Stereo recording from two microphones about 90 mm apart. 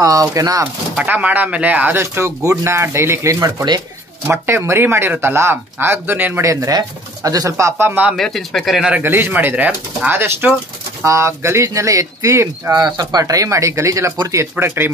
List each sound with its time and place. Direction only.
0.0 s speech: 40° right (ahead or behind)
0.9 s speech: 15° right (ahead or behind)
6.4 s speech: 35° right (ahead or behind)
8.2 s speech: 5° left (ahead or behind)
9.0 s speech: 25° right (ahead or behind)
12.7 s speech: 50° right (ahead or behind)
14.6 s speech: 20° right (ahead or behind)